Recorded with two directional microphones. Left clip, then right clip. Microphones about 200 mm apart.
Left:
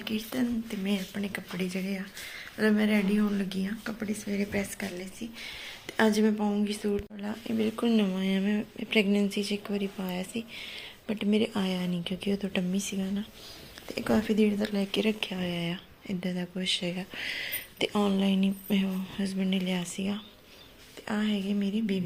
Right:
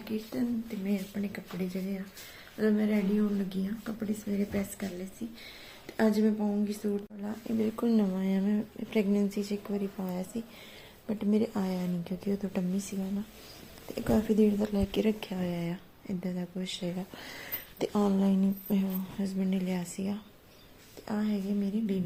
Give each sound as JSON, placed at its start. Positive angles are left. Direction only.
{"t": 0.9, "sound": "speech", "side_deg": 0}
{"t": 17.4, "sound": "a sound", "side_deg": -20}
{"t": 18.0, "sound": "speech", "side_deg": -15}